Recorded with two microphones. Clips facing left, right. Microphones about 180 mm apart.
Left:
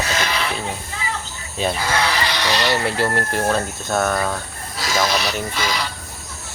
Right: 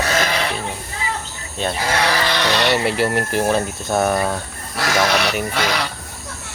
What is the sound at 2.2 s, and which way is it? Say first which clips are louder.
Speech: right 2 dB; 55° right (ahead or behind).